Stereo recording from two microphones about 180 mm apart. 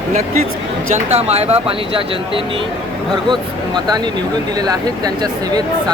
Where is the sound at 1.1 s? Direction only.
35° right (ahead or behind).